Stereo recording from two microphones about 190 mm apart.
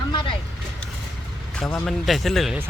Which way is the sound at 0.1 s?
25° left (ahead or behind).